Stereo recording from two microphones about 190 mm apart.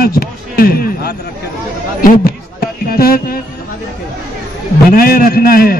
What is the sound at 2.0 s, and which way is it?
A man's voice, 50° left (ahead or behind).